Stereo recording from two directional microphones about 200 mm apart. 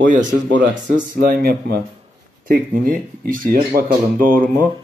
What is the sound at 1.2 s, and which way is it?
Speech, 45° right (ahead or behind).